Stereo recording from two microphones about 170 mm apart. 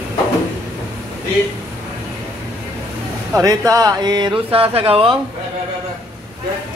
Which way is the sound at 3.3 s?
20° right (ahead or behind).